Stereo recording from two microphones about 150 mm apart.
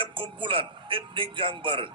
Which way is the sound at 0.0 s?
35° right (ahead or behind).